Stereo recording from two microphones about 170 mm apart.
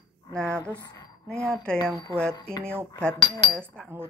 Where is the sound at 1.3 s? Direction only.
5° left (ahead or behind).